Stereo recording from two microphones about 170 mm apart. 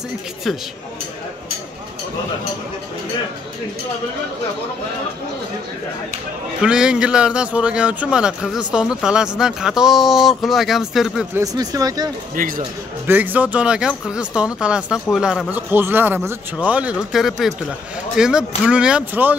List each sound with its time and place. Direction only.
6.6 s speech: 5° right (ahead or behind)
11.3 s speech: 20° right (ahead or behind)
12.4 s speech: 55° right (ahead or behind)
13.0 s speech: 10° right (ahead or behind)